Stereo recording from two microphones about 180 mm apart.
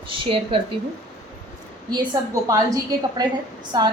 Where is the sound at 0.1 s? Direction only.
30° right (ahead or behind).